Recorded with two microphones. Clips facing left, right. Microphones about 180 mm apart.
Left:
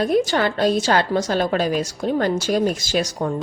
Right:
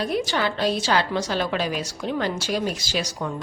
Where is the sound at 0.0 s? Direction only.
45° left (ahead or behind).